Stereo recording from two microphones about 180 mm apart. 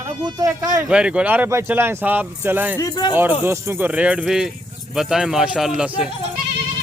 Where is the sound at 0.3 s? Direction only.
20° right (ahead or behind).